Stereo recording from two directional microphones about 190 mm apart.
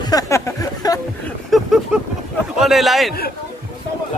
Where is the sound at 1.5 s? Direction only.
Centre (ahead or behind).